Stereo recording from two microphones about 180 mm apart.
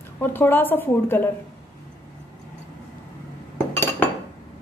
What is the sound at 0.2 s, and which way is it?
A woman's voice, 10° left (ahead or behind).